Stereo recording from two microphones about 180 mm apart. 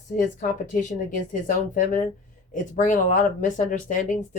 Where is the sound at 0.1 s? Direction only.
45° left (ahead or behind).